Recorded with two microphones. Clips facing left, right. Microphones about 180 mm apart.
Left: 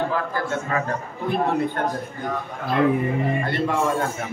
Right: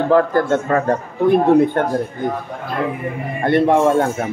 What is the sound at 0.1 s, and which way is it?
Speech, 60° right (ahead or behind).